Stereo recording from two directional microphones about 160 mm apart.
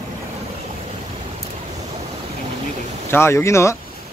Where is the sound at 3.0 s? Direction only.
15° left (ahead or behind).